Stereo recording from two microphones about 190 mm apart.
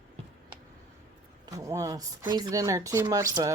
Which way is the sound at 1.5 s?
20° right (ahead or behind).